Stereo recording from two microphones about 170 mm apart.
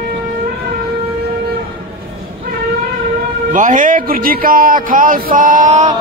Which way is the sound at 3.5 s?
50° right (ahead or behind).